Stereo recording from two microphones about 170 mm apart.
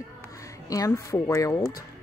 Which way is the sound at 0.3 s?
20° left (ahead or behind).